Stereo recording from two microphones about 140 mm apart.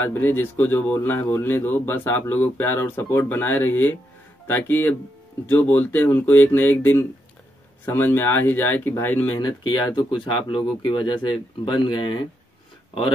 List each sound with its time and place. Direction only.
0.0 s speech: 15° left (ahead or behind)
9.4 s speech: 30° left (ahead or behind)